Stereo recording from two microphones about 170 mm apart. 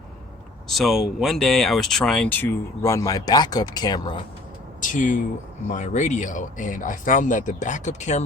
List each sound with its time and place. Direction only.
0.7 s speech: centre (ahead or behind); by 4.2 s 25° left (ahead or behind)
4.8 s speech: 50° left (ahead or behind)